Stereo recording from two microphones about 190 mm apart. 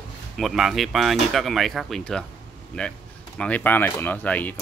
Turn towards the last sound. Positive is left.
turn(degrees=10)  # may be behind; listen again after turning